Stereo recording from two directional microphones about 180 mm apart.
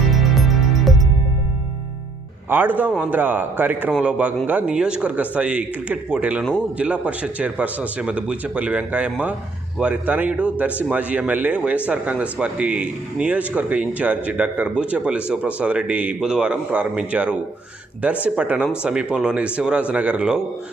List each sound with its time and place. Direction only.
0.0 s music: centre (ahead or behind)
2.5 s speech: 10° right (ahead or behind)